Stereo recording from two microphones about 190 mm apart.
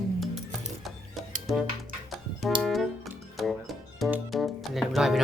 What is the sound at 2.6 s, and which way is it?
Music, centre (ahead or behind).